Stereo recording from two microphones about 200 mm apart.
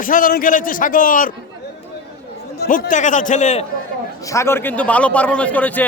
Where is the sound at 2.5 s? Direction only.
50° left (ahead or behind).